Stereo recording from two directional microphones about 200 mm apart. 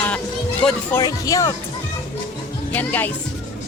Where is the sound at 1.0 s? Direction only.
15° left (ahead or behind).